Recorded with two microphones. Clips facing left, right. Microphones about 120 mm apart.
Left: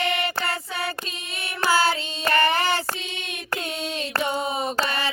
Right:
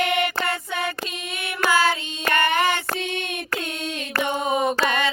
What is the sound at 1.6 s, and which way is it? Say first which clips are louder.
Child singing: right 1 dB; 30° left (ahead or behind).